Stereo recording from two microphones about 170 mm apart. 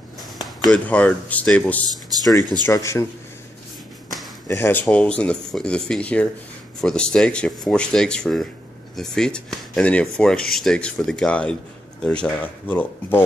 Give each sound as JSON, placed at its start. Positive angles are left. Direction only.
{"t": 0.7, "sound": "speech", "side_deg": 5}
{"t": 1.9, "sound": "speech", "side_deg": -20}
{"t": 2.7, "sound": "speech", "side_deg": 15}
{"t": 4.5, "sound": "speech", "side_deg": 10}